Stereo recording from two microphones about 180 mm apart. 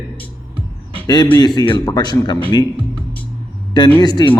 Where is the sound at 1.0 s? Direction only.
25° left (ahead or behind).